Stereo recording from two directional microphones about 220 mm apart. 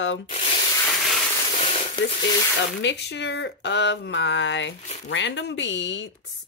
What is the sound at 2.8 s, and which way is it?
Speech, 50° left (ahead or behind).